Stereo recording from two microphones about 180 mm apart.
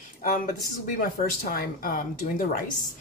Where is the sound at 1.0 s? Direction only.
55° left (ahead or behind).